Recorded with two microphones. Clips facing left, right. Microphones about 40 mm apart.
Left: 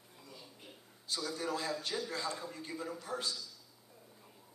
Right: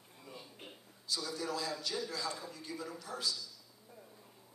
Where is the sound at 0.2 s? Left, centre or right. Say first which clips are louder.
Right 3 dB; right.